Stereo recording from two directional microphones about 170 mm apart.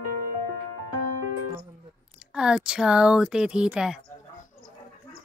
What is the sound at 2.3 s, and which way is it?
Speech, 5° right (ahead or behind).